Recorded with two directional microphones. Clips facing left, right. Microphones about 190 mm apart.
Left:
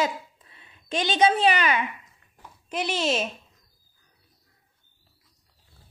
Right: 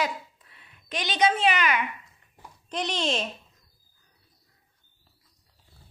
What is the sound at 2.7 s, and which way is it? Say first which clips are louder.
Speech: left 2 dB; 5° left (ahead or behind).